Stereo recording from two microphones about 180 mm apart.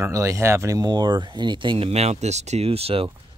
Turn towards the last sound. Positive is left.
turn(degrees=-35)  # may be behind; listen again after turning